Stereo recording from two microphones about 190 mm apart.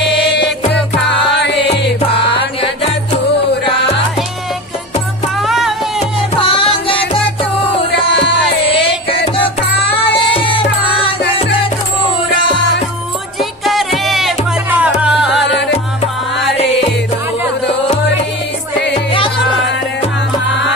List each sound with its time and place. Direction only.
0.2 s music: 65° left (ahead or behind)
5.4 s music: centre (ahead or behind)
6.3 s music: 30° left (ahead or behind)
7.9 s music: 65° left (ahead or behind)
10.1 s music: 25° left (ahead or behind)
13.4 s music: centre (ahead or behind)
15.4 s music: 65° left (ahead or behind)